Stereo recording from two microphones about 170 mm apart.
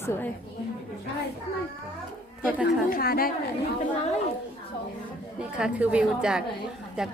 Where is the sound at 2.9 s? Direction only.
60° left (ahead or behind).